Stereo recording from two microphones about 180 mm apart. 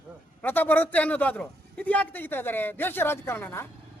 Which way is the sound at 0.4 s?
10° left (ahead or behind).